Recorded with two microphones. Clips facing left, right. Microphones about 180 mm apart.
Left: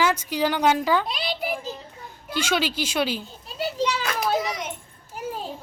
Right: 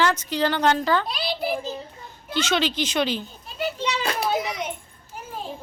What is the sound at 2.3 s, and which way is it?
Speech, 10° left (ahead or behind).